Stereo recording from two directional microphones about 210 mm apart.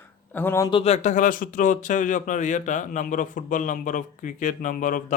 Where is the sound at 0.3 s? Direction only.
10° left (ahead or behind).